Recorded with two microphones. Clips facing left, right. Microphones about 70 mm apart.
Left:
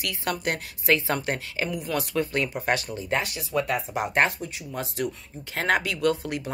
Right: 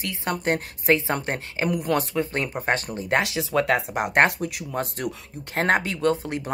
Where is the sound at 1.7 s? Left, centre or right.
Right.